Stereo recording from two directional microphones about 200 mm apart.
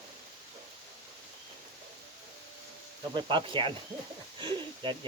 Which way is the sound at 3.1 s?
25° right (ahead or behind).